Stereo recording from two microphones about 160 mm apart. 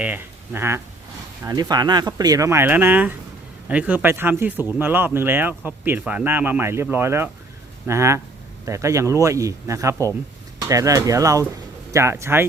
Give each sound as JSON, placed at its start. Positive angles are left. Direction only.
{"t": 0.0, "sound": "speech", "side_deg": -10}